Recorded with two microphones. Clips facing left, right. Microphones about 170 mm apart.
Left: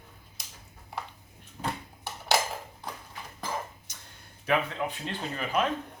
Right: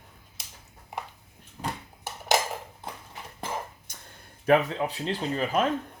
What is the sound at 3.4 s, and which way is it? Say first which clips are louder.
Dishes: right 1 dB; 55° right (ahead or behind).